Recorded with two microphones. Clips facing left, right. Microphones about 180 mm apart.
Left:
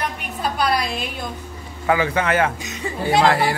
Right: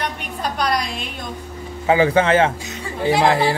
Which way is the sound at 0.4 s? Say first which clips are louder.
Left 1 dB; 5° left (ahead or behind).